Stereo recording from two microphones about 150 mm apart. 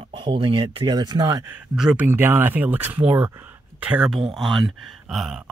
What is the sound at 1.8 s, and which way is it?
Speech, 5° right (ahead or behind).